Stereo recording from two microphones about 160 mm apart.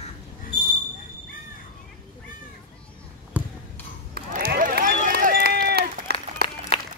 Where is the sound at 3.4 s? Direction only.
10° right (ahead or behind).